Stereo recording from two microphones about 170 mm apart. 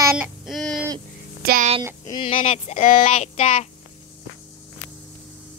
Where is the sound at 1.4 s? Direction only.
60° right (ahead or behind).